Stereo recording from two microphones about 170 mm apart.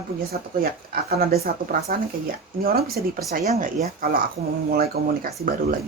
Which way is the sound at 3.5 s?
40° right (ahead or behind).